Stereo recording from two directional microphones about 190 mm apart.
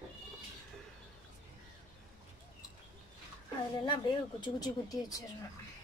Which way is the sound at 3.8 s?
25° left (ahead or behind).